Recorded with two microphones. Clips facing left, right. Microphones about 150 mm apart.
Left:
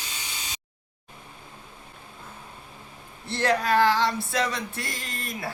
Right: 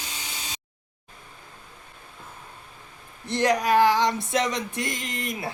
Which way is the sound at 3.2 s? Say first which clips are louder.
Right 2 dB; 15° right (ahead or behind).